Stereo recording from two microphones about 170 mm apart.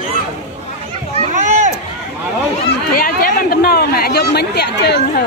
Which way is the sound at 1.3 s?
45° right (ahead or behind).